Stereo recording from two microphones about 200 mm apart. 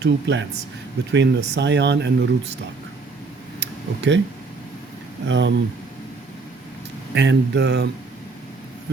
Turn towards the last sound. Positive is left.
turn(degrees=-55)  # may be behind; listen again after turning